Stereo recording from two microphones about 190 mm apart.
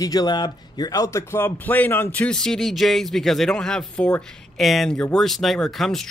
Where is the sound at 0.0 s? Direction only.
20° left (ahead or behind).